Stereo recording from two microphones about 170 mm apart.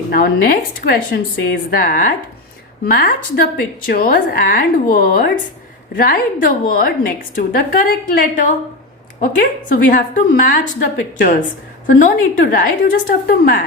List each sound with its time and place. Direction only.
0.1 s a woman's voice: 60° left (ahead or behind)
11.9 s a woman's voice: 50° left (ahead or behind)